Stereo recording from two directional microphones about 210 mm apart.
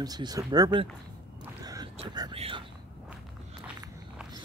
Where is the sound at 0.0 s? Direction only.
20° right (ahead or behind).